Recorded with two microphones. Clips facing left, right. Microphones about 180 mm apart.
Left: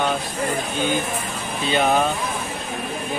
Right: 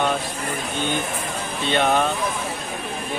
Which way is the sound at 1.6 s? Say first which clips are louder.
Left 1 dB; 5° left (ahead or behind).